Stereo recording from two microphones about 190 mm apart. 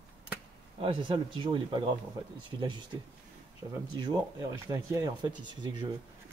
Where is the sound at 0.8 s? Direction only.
25° right (ahead or behind).